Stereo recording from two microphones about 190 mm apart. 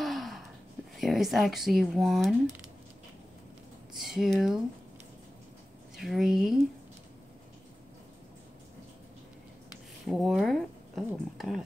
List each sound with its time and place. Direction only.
0.0 s a sound: centre (ahead or behind)
0.9 s speech: centre (ahead or behind)
3.9 s speech: centre (ahead or behind)
5.9 s speech: centre (ahead or behind)
10.0 s speech: centre (ahead or behind)